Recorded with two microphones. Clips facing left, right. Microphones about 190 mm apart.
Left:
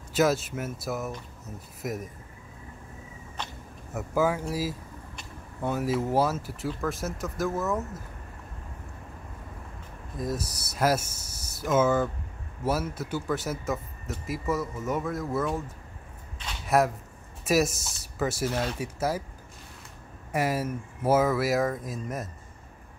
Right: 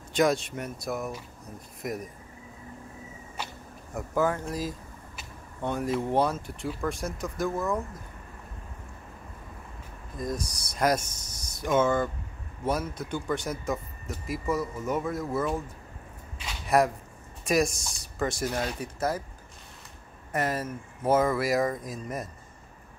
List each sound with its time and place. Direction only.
0.1 s speech: 5° left (ahead or behind)
3.4 s a sound: 10° right (ahead or behind)
3.9 s speech: 5° left (ahead or behind)
10.1 s speech: 5° left (ahead or behind)
16.3 s a sound: centre (ahead or behind)
17.5 s speech: 5° left (ahead or behind)
18.5 s speech: 10° right (ahead or behind)
18.8 s speech: 10° left (ahead or behind)
20.3 s speech: 10° left (ahead or behind)